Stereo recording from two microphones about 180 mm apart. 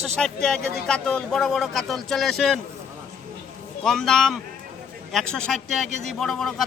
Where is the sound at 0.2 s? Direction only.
5° left (ahead or behind).